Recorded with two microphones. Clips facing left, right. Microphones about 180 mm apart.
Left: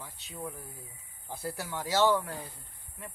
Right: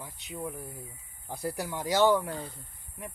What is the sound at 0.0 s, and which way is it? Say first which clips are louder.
Speech: right 3 dB; 15° right (ahead or behind).